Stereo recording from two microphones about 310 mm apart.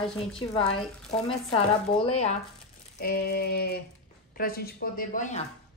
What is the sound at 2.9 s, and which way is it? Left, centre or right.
Child singing, left.